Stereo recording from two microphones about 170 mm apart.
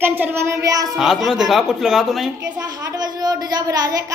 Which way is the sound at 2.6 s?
20° right (ahead or behind).